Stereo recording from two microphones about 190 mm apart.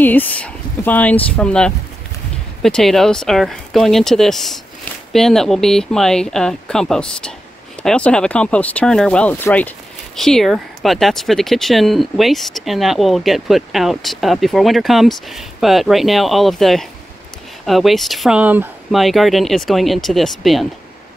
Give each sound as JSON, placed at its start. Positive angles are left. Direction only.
{"t": 0.0, "sound": "speech", "side_deg": 10}